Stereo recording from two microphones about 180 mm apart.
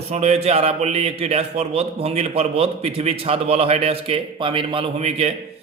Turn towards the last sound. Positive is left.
turn(degrees=-35)  # may be behind; listen again after turning